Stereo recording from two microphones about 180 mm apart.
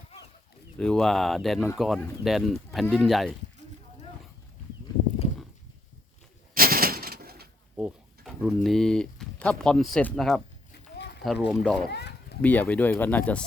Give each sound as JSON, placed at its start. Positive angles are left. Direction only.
{"t": 0.8, "sound": "speech", "side_deg": 5}
{"t": 6.5, "sound": "bird", "side_deg": -55}
{"t": 7.8, "sound": "speech", "side_deg": -5}
{"t": 11.9, "sound": "a sound", "side_deg": 65}
{"t": 12.4, "sound": "speech", "side_deg": 10}